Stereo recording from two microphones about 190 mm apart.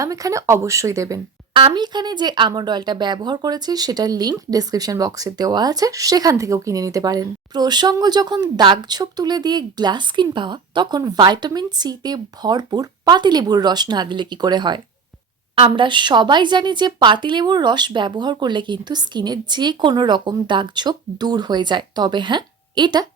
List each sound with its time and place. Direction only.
0.0 s speech: 15° right (ahead or behind)